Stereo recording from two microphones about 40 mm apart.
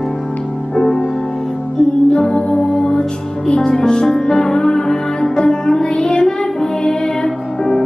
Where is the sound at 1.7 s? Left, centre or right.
Left.